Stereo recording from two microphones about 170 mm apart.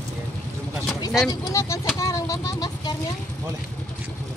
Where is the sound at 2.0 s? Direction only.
20° left (ahead or behind).